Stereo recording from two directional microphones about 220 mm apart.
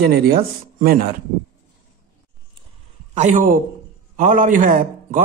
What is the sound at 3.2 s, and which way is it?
A man's voice, 35° right (ahead or behind).